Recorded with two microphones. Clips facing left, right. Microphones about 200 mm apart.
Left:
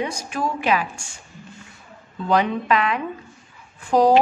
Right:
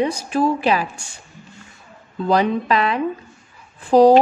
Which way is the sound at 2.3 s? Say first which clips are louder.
Right 2 dB; 35° right (ahead or behind).